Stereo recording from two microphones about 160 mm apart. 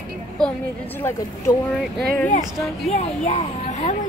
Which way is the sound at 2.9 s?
45° left (ahead or behind).